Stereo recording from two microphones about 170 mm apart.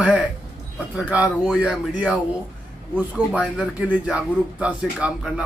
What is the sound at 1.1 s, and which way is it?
A man's voice, 5° right (ahead or behind).